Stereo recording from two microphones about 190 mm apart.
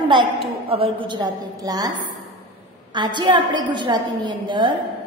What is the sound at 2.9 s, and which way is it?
A woman's voice, 25° right (ahead or behind).